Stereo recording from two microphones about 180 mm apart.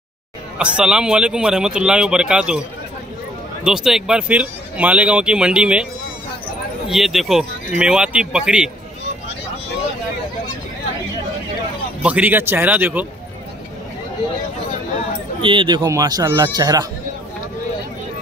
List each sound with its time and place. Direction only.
0.6 s speech: 5° right (ahead or behind)
3.6 s speech: 5° right (ahead or behind)
6.9 s speech: centre (ahead or behind)
12.0 s speech: 10° right (ahead or behind)
15.4 s speech: 25° right (ahead or behind)